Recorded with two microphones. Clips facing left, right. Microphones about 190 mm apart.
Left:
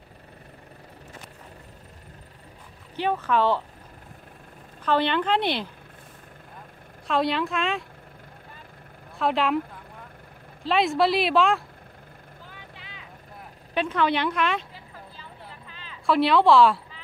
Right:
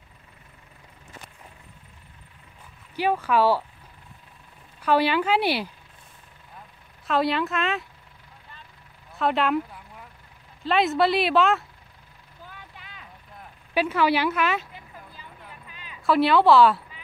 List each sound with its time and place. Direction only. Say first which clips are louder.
3.0 s a woman's voice: right 2 dB; 10° right (ahead or behind)
4.8 s a woman's voice: right 2 dB; 10° right (ahead or behind)
7.1 s speech: right 1 dB; centre (ahead or behind)
9.2 s speech: even; centre (ahead or behind)
10.6 s speech: even; centre (ahead or behind)
12.4 s vehicle: right 3 dB; 50° right (ahead or behind)
13.7 s a woman's voice: right 2 dB; 5° right (ahead or behind)
15.6 s a sound: left 1 dB; 15° right (ahead or behind)
16.1 s speech: right 1 dB; centre (ahead or behind)